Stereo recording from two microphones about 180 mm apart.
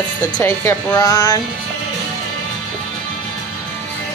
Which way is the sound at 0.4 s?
10° left (ahead or behind).